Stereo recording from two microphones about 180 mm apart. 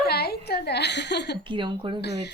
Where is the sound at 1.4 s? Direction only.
25° right (ahead or behind).